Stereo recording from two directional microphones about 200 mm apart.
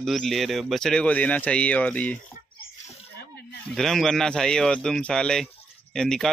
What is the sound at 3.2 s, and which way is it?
Snake, 55° left (ahead or behind).